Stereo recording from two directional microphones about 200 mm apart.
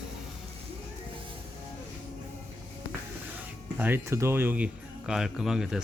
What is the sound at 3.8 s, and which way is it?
Speech, 10° right (ahead or behind).